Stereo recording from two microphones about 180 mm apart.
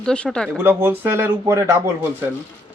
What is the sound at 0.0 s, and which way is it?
Speech, 5° left (ahead or behind).